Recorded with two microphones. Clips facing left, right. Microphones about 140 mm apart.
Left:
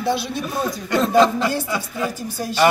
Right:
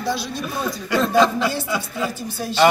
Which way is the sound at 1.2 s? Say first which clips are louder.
Left 2 dB; centre (ahead or behind).